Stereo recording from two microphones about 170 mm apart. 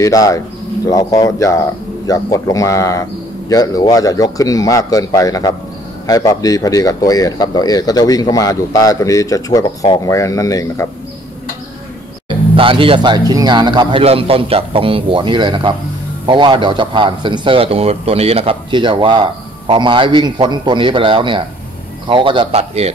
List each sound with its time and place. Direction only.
0.0 s speech: 20° left (ahead or behind)
12.5 s a man's voice: 30° right (ahead or behind)